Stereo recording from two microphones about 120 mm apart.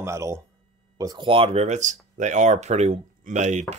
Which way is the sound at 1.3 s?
55° right (ahead or behind).